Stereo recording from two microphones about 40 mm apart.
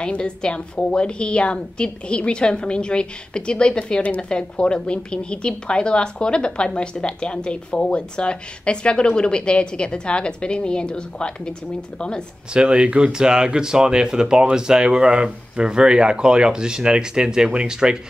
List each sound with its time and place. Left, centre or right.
0.0 s speech: left
12.5 s speech: right